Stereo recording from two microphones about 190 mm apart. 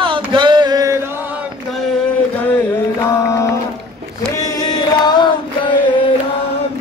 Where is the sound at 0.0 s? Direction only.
25° right (ahead or behind).